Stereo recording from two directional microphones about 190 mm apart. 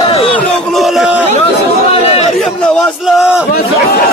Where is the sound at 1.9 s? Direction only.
30° left (ahead or behind).